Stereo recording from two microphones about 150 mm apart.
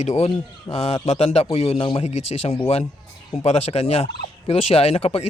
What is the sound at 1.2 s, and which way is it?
Fowl, 45° left (ahead or behind).